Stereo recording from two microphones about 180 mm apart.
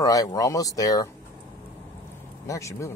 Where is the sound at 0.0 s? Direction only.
20° left (ahead or behind).